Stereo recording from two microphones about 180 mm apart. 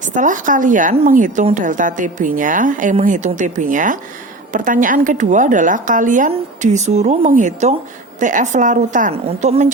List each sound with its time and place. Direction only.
0.1 s a woman's voice: 45° right (ahead or behind)